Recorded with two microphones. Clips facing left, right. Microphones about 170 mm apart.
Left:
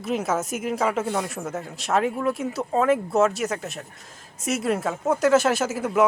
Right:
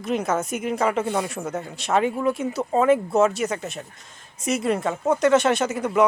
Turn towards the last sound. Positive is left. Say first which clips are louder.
# right 1 dB
turn(degrees=5)  # may be behind; listen again after turning